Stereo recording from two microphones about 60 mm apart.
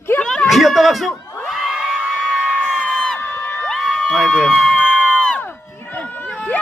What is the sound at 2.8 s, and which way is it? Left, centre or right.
Crowd, centre.